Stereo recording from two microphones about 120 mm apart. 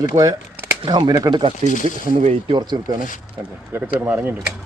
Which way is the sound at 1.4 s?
45° right (ahead or behind).